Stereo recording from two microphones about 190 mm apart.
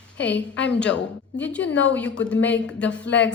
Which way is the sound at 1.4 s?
5° left (ahead or behind).